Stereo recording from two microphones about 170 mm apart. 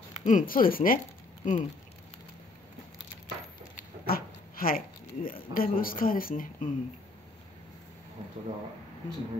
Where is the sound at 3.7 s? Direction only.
60° left (ahead or behind).